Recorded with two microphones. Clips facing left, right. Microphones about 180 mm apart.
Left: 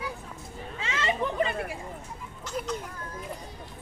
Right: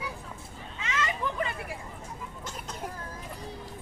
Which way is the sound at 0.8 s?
30° left (ahead or behind).